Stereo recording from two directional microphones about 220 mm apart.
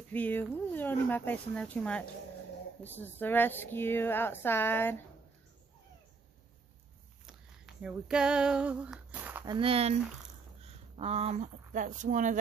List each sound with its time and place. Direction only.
0.1 s speech: 10° left (ahead or behind)
7.2 s female singing: 5° right (ahead or behind); by 9.9 s 25° right (ahead or behind)
10.6 s speech: 30° right (ahead or behind)